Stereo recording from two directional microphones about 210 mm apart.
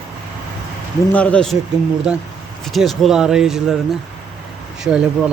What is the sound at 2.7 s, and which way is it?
Speech, centre (ahead or behind).